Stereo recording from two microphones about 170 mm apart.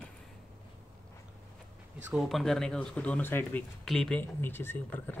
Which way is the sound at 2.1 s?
Centre (ahead or behind).